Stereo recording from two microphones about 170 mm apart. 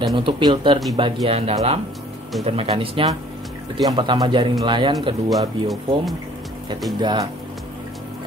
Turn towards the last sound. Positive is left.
turn(degrees=-25)  # may be behind; listen again after turning